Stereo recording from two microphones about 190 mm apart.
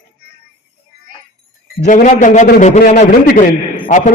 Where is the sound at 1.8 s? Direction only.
40° left (ahead or behind).